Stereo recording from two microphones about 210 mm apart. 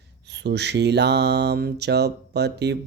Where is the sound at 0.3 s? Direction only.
55° right (ahead or behind).